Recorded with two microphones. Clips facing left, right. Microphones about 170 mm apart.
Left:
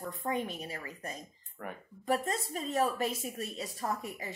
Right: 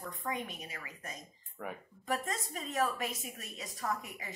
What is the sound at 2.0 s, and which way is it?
A woman's voice, 30° left (ahead or behind).